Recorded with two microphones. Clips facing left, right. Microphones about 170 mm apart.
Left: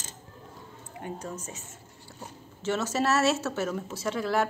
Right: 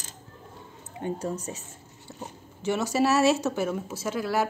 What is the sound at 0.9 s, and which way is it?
Speech, 30° right (ahead or behind).